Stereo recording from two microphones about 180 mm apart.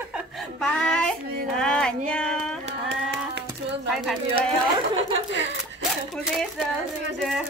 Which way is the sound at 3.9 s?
Centre (ahead or behind).